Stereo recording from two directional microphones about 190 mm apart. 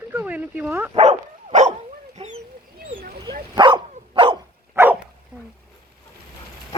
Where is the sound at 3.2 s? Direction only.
25° right (ahead or behind).